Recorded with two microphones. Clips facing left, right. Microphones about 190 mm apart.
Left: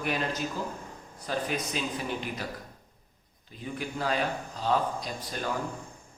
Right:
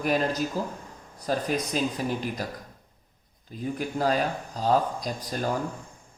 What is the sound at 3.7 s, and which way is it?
Speech, 40° right (ahead or behind).